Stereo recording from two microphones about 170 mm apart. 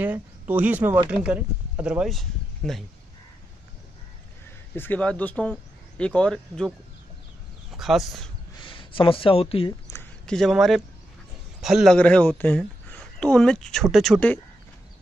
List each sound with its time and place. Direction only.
0.0 s speech: 10° right (ahead or behind)
4.7 s speech: 10° left (ahead or behind)
7.7 s speech: centre (ahead or behind)
8.5 s speech: 30° left (ahead or behind)
10.2 s a woman's voice: 5° left (ahead or behind)